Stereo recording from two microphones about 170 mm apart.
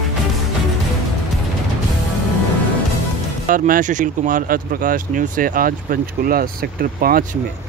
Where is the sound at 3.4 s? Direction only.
55° right (ahead or behind).